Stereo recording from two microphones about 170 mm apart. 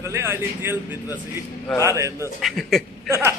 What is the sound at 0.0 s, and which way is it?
Speech, 15° right (ahead or behind).